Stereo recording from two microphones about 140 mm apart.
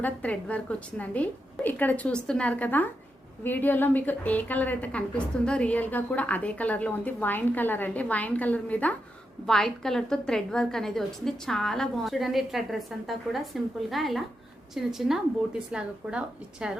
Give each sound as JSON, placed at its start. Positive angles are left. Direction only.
{"t": 0.0, "sound": "a woman's voice", "side_deg": 10}